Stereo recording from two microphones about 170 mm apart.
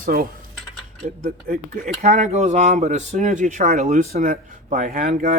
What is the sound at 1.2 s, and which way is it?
Speech, 55° right (ahead or behind).